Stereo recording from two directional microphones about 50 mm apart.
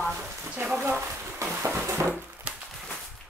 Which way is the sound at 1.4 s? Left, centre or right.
Right.